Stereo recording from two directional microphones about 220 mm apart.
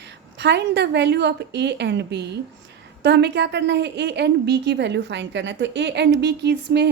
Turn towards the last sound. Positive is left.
turn(degrees=-50)  # may be behind; listen again after turning